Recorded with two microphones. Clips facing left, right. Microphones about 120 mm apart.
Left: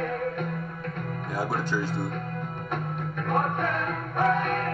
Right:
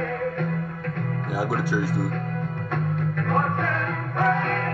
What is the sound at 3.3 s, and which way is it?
Music, 20° left (ahead or behind).